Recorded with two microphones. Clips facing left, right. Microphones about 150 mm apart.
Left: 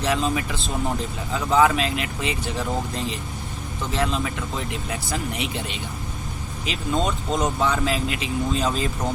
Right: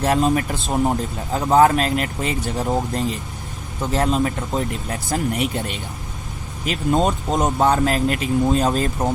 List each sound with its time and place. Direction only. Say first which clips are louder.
0.0 s speech: right 5 dB; 50° right (ahead or behind)